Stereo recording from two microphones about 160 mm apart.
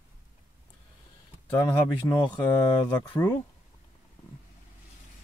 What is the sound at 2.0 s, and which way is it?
Speech, 20° left (ahead or behind).